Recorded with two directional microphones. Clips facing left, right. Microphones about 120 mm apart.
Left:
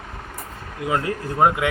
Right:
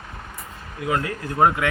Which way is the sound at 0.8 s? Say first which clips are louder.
Left 1 dB; 25° left (ahead or behind).